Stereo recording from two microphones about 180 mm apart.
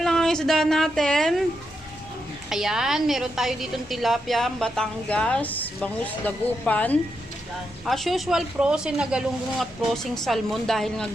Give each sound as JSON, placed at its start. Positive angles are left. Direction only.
{"t": 0.0, "sound": "speech", "side_deg": 5}
{"t": 2.5, "sound": "a woman's voice", "side_deg": 0}